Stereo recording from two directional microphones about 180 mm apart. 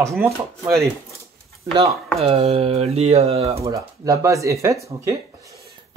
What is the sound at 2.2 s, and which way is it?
Speech, 35° right (ahead or behind).